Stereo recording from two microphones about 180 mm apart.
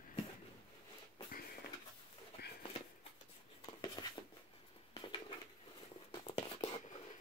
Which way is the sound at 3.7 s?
20° left (ahead or behind).